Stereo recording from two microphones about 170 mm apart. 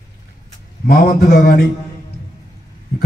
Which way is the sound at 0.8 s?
55° left (ahead or behind).